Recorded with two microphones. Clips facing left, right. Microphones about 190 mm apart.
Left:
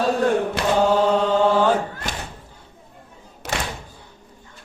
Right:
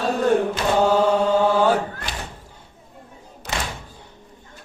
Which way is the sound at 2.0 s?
45° left (ahead or behind).